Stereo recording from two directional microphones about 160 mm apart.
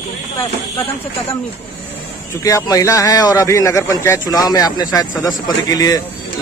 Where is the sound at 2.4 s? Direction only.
20° left (ahead or behind).